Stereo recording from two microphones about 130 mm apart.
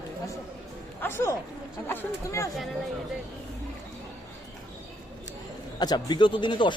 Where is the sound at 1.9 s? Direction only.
25° left (ahead or behind).